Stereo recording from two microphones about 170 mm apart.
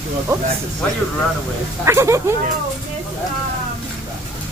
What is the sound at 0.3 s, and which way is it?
Speech, 15° right (ahead or behind).